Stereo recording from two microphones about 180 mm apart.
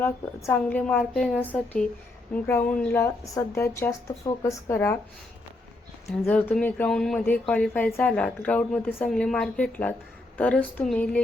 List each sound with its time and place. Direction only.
0.0 s speech: 15° left (ahead or behind)
6.2 s speech: 10° left (ahead or behind)